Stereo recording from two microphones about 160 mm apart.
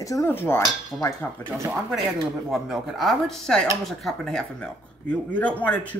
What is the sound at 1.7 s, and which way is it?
A woman's voice, 5° right (ahead or behind).